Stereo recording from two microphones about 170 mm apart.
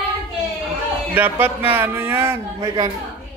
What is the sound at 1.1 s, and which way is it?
A man's voice, 10° right (ahead or behind).